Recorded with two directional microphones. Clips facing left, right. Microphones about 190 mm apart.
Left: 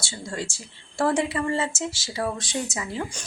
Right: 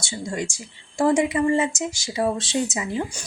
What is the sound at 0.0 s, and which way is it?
A woman's voice, 15° right (ahead or behind).